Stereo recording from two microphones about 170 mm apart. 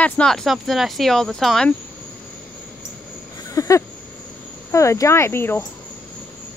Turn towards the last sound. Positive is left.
turn(degrees=15)  # may be behind; listen again after turning